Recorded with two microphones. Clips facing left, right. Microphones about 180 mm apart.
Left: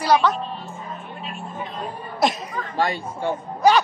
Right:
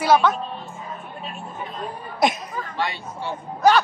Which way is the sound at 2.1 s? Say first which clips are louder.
Even; centre (ahead or behind).